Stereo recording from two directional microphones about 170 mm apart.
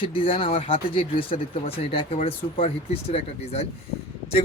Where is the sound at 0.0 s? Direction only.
30° left (ahead or behind).